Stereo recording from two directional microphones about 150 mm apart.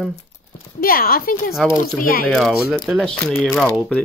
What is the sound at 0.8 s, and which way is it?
Speech, 75° left (ahead or behind).